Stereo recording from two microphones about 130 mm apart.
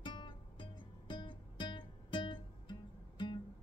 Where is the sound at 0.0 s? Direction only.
35° left (ahead or behind).